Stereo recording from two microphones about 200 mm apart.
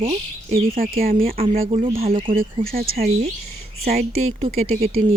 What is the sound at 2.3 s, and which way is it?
Speech, 45° right (ahead or behind).